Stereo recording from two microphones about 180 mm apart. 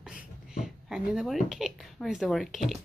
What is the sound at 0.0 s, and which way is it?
Speech, 5° right (ahead or behind).